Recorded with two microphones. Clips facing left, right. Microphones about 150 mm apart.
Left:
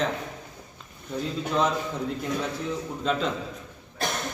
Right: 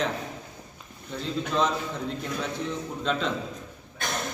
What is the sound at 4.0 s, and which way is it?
Cough, 35° left (ahead or behind).